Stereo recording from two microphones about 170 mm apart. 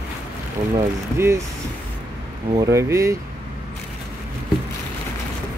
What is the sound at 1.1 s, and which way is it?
Speech, 15° right (ahead or behind).